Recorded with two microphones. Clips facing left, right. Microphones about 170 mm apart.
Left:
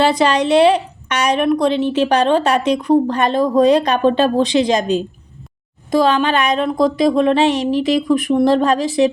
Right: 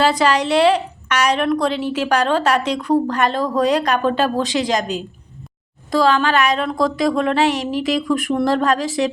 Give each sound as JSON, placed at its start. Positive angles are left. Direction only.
{"t": 0.0, "sound": "a woman's voice", "side_deg": 20}